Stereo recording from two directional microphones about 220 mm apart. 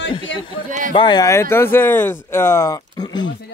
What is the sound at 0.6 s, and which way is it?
Speech, 35° right (ahead or behind).